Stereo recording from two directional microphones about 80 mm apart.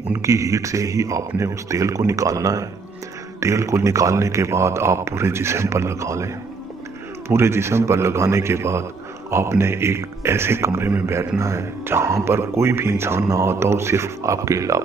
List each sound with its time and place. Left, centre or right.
0.2 s a man's voice: right